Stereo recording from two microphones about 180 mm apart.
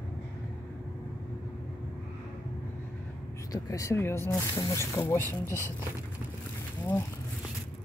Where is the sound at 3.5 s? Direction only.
15° left (ahead or behind).